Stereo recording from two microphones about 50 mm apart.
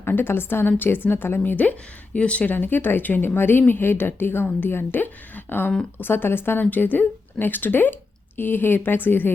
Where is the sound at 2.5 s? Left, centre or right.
Left.